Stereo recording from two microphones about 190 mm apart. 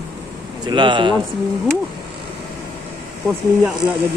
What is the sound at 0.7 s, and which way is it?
Speech, 25° right (ahead or behind).